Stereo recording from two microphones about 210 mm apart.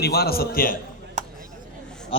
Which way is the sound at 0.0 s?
50° left (ahead or behind).